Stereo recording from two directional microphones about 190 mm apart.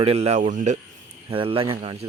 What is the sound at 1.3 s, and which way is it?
Speech, 30° right (ahead or behind).